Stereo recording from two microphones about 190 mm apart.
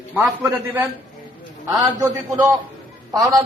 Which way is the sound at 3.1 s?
20° right (ahead or behind).